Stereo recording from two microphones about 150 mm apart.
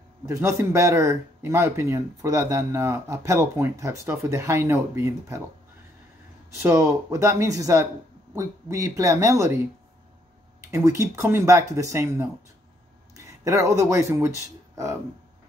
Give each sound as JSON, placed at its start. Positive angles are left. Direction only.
{"t": 0.3, "sound": "speech", "side_deg": -20}
{"t": 6.5, "sound": "speech", "side_deg": -20}
{"t": 10.7, "sound": "speech", "side_deg": -20}